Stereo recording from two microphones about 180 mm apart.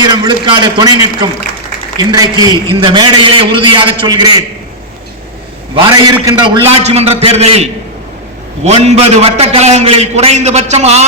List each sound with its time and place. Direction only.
0.0 s a man's voice: 25° right (ahead or behind)
5.7 s a man's voice: 20° right (ahead or behind)
6.8 s a man's voice: 35° right (ahead or behind)